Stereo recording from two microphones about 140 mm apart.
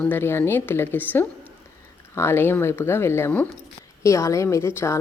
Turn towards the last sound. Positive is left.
turn(degrees=20)  # may be behind; listen again after turning